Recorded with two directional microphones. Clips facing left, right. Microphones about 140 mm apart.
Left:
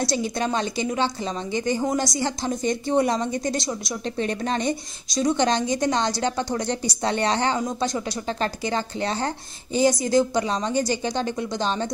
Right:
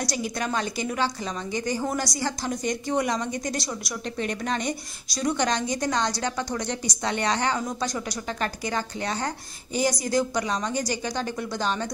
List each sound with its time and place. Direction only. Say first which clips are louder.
0.0 s a woman's voice: left 4 dB; 25° left (ahead or behind)